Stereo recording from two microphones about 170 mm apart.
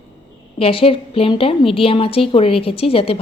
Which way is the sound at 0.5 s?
35° left (ahead or behind).